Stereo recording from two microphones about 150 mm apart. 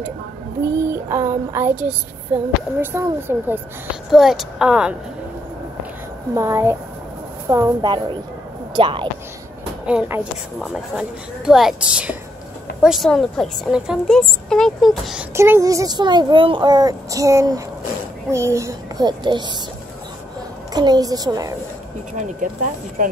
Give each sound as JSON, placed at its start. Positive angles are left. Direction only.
{"t": 0.6, "sound": "speech", "side_deg": -20}
{"t": 4.1, "sound": "a woman's voice", "side_deg": 0}
{"t": 6.3, "sound": "a woman's voice", "side_deg": -15}
{"t": 9.8, "sound": "a woman's voice", "side_deg": -10}
{"t": 15.3, "sound": "a woman's voice", "side_deg": -15}
{"t": 20.7, "sound": "a woman's voice", "side_deg": -25}